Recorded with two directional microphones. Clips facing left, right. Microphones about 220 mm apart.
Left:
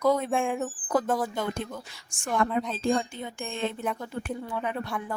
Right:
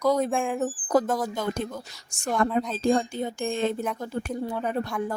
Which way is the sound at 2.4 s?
45° right (ahead or behind).